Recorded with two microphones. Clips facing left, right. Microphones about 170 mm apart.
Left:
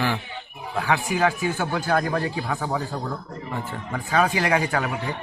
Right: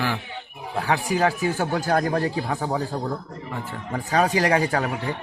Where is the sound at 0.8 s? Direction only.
35° right (ahead or behind).